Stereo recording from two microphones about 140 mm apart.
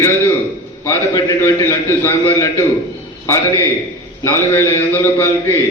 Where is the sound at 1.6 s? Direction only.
20° left (ahead or behind).